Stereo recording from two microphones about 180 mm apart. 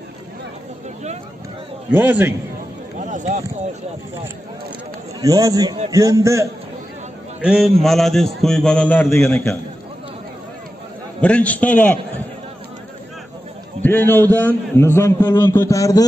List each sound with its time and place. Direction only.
1.9 s a man's voice: 10° right (ahead or behind)
3.0 s a sound: 45° right (ahead or behind)
5.2 s a man's voice: 20° right (ahead or behind)
7.4 s a man's voice: 5° right (ahead or behind); by 9.6 s 15° left (ahead or behind)
11.1 s a man's voice: 5° left (ahead or behind)
13.8 s a man's voice: 10° left (ahead or behind)